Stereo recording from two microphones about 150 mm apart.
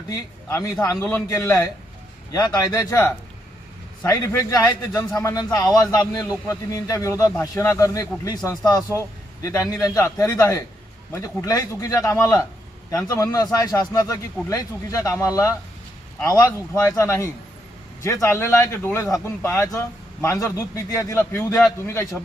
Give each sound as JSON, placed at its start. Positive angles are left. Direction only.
{"t": 0.1, "sound": "a man's voice", "side_deg": 25}